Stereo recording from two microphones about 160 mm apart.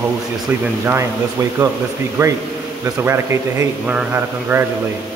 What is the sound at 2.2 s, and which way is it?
Speech, 20° right (ahead or behind).